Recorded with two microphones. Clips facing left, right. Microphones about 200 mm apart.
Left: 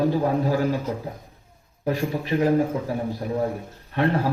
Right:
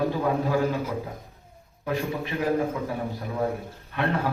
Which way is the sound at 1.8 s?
35° left (ahead or behind).